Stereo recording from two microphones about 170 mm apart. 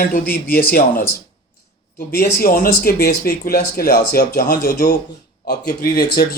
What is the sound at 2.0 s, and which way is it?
Speech, 60° left (ahead or behind).